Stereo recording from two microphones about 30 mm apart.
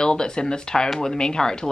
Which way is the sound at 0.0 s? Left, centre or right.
Left.